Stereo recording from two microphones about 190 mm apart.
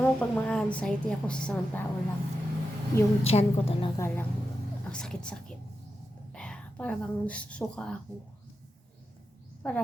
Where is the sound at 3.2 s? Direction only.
30° left (ahead or behind).